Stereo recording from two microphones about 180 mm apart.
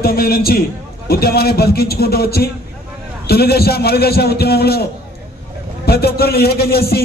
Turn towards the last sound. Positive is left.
turn(degrees=60)  # may be behind; listen again after turning